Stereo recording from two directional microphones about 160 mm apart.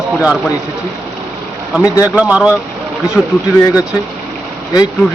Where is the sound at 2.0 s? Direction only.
10° right (ahead or behind).